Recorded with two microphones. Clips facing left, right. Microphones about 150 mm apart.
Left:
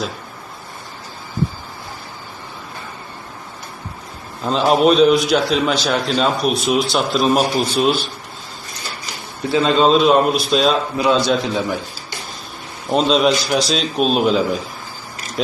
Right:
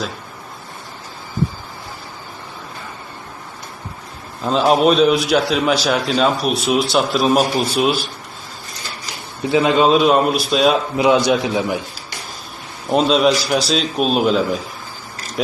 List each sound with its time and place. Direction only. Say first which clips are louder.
4.4 s a man's voice: even; centre (ahead or behind)
9.4 s a man's voice: right 1 dB; 15° right (ahead or behind)
9.8 s a man's voice: left 3 dB; 5° right (ahead or behind)
10.9 s a man's voice: right 2 dB; 15° right (ahead or behind)
12.9 s a man's voice: right 1 dB; 5° right (ahead or behind)